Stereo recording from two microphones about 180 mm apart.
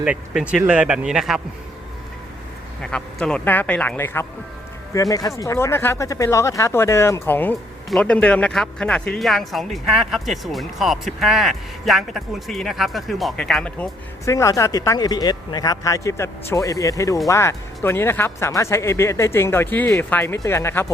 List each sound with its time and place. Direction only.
0.0 s speech: 5° right (ahead or behind)
2.8 s speech: 5° left (ahead or behind)
14.3 s speech: 15° left (ahead or behind)